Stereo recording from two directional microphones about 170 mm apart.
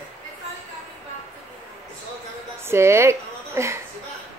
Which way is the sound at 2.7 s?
15° right (ahead or behind).